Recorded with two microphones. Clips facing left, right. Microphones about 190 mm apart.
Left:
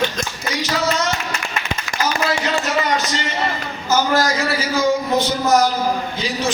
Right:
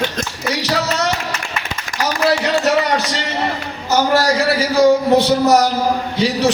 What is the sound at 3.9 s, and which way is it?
Speech, 65° right (ahead or behind).